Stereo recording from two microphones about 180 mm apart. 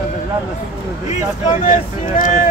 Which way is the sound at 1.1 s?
45° left (ahead or behind).